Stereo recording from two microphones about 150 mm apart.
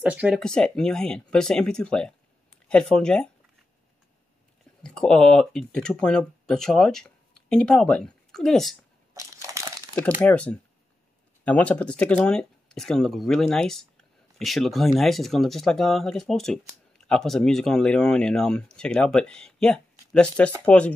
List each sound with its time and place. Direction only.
0.0 s speech: 10° right (ahead or behind)
0.4 s speech: 5° left (ahead or behind)
4.8 s speech: 5° left (ahead or behind)
9.1 s crumpling: 20° right (ahead or behind)
10.2 s speech: 10° left (ahead or behind)